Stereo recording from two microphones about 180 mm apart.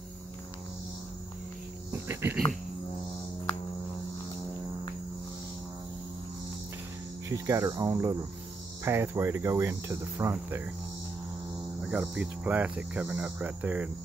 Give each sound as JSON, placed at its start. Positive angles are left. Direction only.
{"t": 1.9, "sound": "cricket", "side_deg": -15}
{"t": 7.2, "sound": "cricket", "side_deg": -15}
{"t": 11.8, "sound": "cricket", "side_deg": -5}